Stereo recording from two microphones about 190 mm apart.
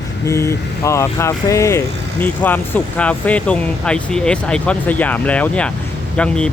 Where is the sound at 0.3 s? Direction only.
15° left (ahead or behind).